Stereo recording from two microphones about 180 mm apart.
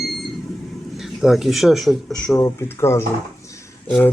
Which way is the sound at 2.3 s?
15° left (ahead or behind).